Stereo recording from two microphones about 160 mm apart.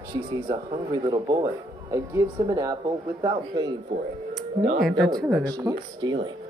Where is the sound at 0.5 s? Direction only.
25° right (ahead or behind).